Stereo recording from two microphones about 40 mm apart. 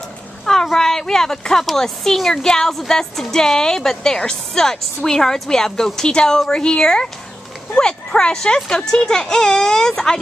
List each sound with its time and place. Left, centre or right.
0.7 s a woman's voice: centre